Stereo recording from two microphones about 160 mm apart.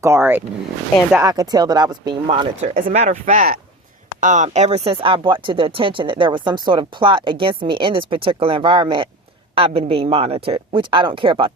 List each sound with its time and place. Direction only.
0.0 s speech: 15° right (ahead or behind); by 2.5 s 30° right (ahead or behind)
2.6 s speech: 55° right (ahead or behind); by 11.5 s 35° right (ahead or behind)